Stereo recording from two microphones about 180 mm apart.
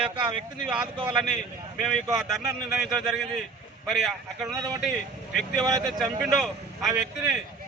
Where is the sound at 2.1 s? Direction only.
Centre (ahead or behind).